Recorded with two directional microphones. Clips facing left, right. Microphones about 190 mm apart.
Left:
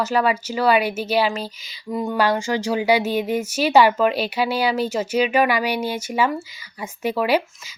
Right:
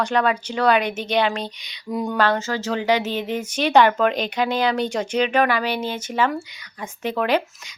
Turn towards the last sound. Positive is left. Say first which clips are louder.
# left 1 dB
turn(degrees=10)  # may be behind; listen again after turning